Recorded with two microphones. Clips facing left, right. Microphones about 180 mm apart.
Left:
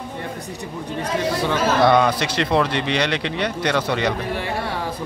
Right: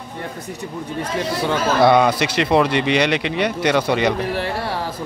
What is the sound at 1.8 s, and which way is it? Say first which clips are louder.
Speech: right 3 dB; 10° right (ahead or behind).